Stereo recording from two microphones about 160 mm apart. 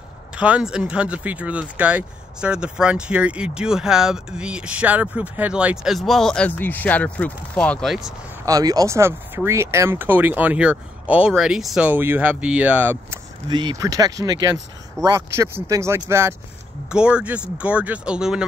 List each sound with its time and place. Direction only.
0.4 s speech: 5° right (ahead or behind)
8.5 s speech: 20° right (ahead or behind)
13.5 s speech: 30° right (ahead or behind)
16.9 s speech: 5° right (ahead or behind)